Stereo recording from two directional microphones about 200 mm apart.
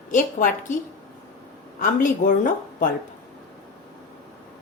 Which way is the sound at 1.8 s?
40° left (ahead or behind).